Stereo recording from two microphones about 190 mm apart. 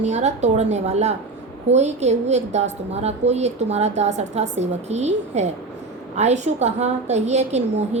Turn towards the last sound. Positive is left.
turn(degrees=-35)  # may be behind; listen again after turning